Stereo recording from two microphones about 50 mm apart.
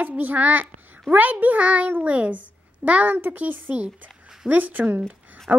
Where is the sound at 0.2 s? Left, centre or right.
Right.